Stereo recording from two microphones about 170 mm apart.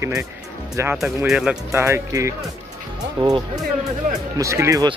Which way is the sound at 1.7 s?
15° right (ahead or behind).